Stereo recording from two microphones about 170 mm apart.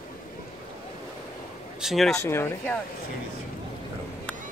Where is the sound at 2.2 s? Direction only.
15° left (ahead or behind).